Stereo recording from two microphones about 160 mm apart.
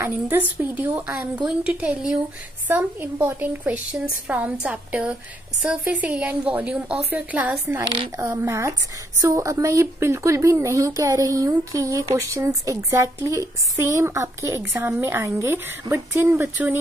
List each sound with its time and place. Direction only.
0.0 s a woman's voice: 15° right (ahead or behind)